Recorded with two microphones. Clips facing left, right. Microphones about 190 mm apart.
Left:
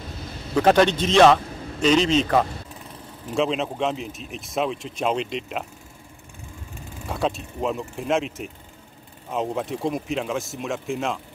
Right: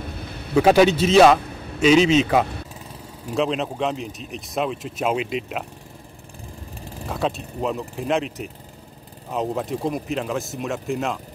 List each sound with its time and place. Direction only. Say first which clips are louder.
0.0 s a sound: right 2 dB; 60° right (ahead or behind)
0.6 s speech: right 3 dB; 5° right (ahead or behind)
6.8 s vehicle: right 4 dB; 35° right (ahead or behind)
7.1 s speech: even; centre (ahead or behind)